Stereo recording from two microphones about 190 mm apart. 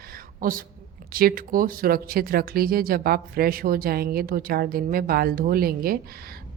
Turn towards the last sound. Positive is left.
turn(degrees=-50)  # may be behind; listen again after turning